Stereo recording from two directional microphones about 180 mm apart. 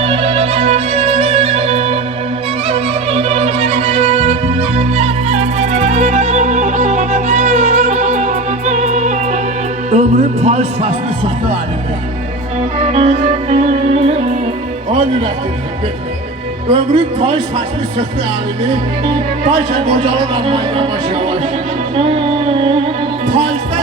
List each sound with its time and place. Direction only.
0.0 s music: 35° right (ahead or behind)
12.9 s music: 35° right (ahead or behind)
16.6 s a man's voice: 30° right (ahead or behind)
19.5 s a man's voice: 30° right (ahead or behind)
23.2 s music: 25° right (ahead or behind)